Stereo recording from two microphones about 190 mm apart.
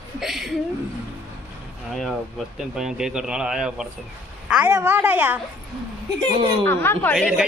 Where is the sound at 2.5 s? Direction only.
5° right (ahead or behind).